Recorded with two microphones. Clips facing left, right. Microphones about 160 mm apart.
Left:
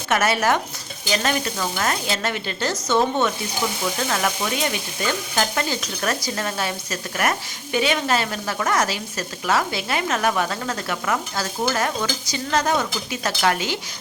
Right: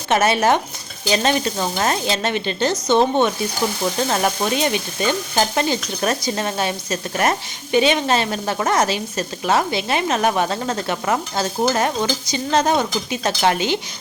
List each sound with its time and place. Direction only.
0.1 s stir: 20° right (ahead or behind)